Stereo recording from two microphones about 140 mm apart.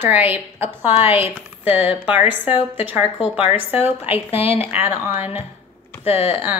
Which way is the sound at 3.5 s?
45° left (ahead or behind).